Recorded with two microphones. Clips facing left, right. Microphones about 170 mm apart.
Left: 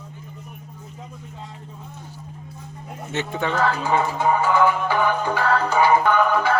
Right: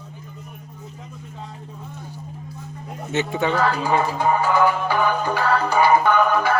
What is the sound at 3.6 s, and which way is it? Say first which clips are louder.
Music: left 2 dB; 10° right (ahead or behind).